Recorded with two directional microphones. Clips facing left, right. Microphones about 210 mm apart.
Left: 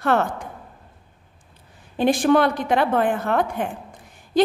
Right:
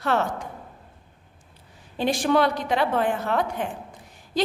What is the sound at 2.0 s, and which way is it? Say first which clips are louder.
A woman's voice: left 4 dB; 50° left (ahead or behind).